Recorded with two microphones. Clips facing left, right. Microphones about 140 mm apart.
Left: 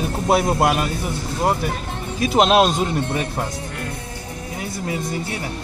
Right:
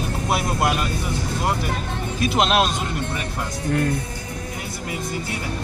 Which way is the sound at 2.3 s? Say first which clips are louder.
Left 6 dB; 35° left (ahead or behind).